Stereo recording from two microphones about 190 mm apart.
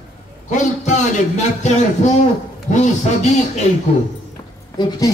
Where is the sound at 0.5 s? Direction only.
40° left (ahead or behind).